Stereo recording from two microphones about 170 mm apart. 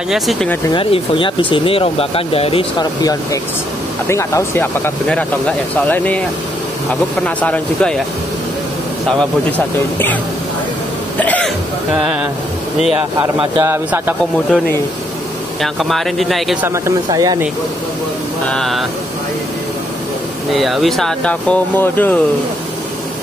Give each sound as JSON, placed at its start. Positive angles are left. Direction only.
{"t": 0.1, "sound": "speech", "side_deg": 0}
{"t": 0.7, "sound": "speech", "side_deg": 30}
{"t": 11.1, "sound": "throat clearing", "side_deg": 10}
{"t": 11.9, "sound": "speech", "side_deg": -5}
{"t": 13.2, "sound": "speech", "side_deg": -30}
{"t": 13.7, "sound": "speech", "side_deg": -15}
{"t": 15.6, "sound": "speech", "side_deg": 0}
{"t": 16.6, "sound": "speech", "side_deg": -15}
{"t": 18.5, "sound": "speech", "side_deg": 0}
{"t": 20.5, "sound": "speech", "side_deg": 0}